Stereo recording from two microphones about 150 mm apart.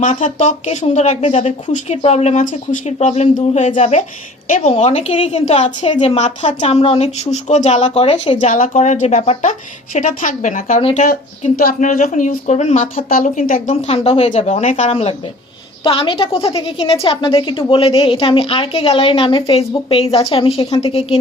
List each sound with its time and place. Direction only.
0.0 s speech: 55° left (ahead or behind)
8.4 s a woman's voice: 55° left (ahead or behind)
11.5 s a woman's voice: 70° left (ahead or behind); by 21.2 s 40° left (ahead or behind)